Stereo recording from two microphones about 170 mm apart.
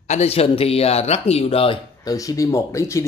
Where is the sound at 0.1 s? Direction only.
35° left (ahead or behind).